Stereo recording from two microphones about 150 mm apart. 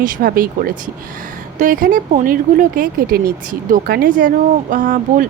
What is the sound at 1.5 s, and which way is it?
A woman's voice, 65° right (ahead or behind).